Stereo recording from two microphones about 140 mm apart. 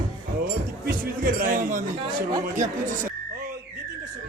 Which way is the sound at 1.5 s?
65° right (ahead or behind).